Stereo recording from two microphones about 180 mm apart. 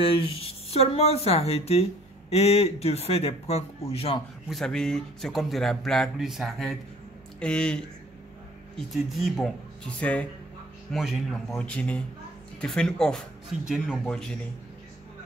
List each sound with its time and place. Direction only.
0.0 s speech: 30° left (ahead or behind)
4.5 s speech: 5° left (ahead or behind)